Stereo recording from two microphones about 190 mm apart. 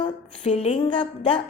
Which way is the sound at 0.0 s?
30° left (ahead or behind).